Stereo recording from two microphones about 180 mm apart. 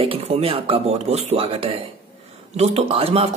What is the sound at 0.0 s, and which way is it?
Speech, 30° right (ahead or behind).